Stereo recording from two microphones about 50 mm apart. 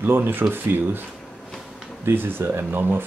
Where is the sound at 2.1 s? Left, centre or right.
Right.